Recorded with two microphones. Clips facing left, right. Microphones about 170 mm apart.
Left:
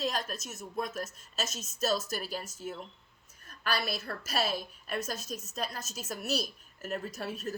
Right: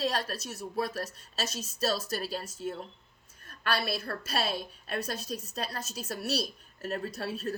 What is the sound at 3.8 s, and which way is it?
A woman's voice, 30° right (ahead or behind).